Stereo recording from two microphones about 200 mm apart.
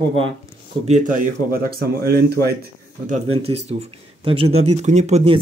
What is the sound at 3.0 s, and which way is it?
Speech, 30° right (ahead or behind).